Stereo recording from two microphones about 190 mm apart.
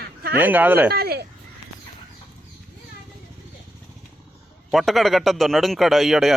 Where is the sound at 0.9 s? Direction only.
55° right (ahead or behind).